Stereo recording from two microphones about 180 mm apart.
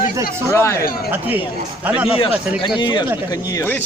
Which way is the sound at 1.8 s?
5° right (ahead or behind).